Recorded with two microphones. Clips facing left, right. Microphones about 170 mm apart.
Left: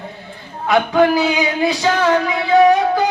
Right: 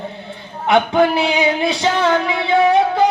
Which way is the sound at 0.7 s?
25° right (ahead or behind).